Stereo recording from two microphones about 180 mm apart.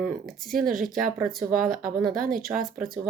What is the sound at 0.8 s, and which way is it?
Speech, centre (ahead or behind).